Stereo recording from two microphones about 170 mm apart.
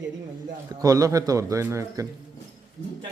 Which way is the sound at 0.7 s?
20° right (ahead or behind).